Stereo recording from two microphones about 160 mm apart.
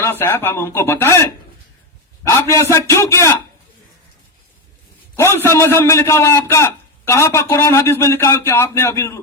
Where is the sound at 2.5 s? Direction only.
20° left (ahead or behind).